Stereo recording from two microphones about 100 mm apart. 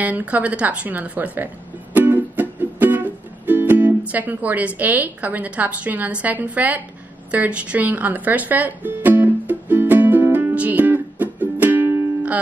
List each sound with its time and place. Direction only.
0.0 s speech: 15° right (ahead or behind)
2.0 s music: 20° right (ahead or behind)
6.2 s speech: 15° right (ahead or behind)
7.2 s music: 15° right (ahead or behind)